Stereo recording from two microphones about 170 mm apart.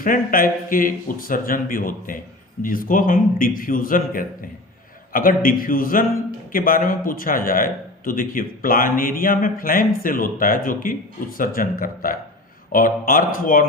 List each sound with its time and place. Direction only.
0.0 s a man's voice: 55° left (ahead or behind)